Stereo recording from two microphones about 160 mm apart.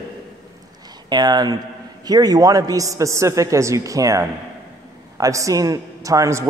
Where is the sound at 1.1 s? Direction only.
25° right (ahead or behind).